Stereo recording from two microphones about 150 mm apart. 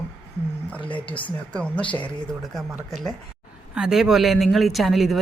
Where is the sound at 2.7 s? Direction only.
5° right (ahead or behind).